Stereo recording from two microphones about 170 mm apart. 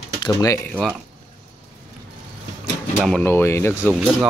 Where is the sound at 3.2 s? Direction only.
15° left (ahead or behind).